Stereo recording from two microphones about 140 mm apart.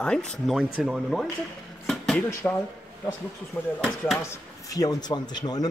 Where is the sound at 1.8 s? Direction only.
Centre (ahead or behind).